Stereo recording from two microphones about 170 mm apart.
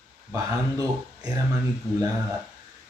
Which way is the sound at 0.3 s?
20° right (ahead or behind).